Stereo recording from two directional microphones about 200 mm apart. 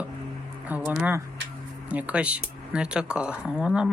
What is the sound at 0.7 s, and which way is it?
Speech, 10° right (ahead or behind).